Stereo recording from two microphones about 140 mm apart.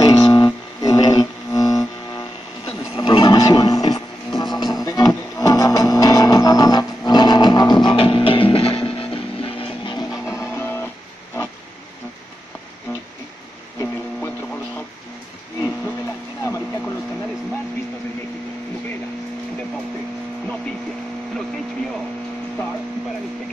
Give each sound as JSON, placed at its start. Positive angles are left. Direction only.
{"t": 0.0, "sound": "a sound", "side_deg": 30}
{"t": 0.8, "sound": "didgeridoo", "side_deg": 30}
{"t": 3.0, "sound": "television", "side_deg": 30}
{"t": 4.4, "sound": "music", "side_deg": 30}
{"t": 10.4, "sound": "music", "side_deg": 15}
{"t": 16.4, "sound": "a sound", "side_deg": 20}